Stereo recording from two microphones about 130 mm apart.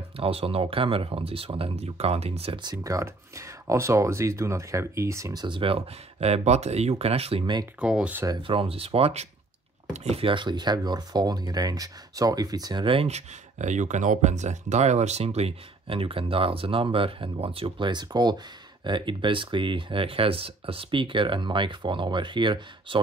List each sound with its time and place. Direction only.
0.2 s speech: 45° right (ahead or behind)
2.6 s speech: 30° right (ahead or behind)
7.8 s speech: 10° right (ahead or behind)
8.4 s speech: 45° right (ahead or behind)